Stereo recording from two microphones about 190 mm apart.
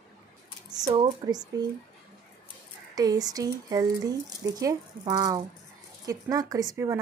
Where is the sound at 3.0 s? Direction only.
20° right (ahead or behind).